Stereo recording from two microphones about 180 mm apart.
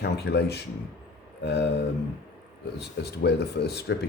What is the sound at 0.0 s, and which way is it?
Speech, 70° left (ahead or behind).